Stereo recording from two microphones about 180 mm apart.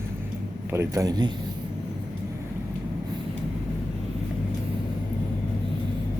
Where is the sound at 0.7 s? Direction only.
15° right (ahead or behind).